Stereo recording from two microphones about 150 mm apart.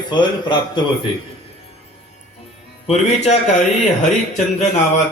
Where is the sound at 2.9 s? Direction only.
45° left (ahead or behind).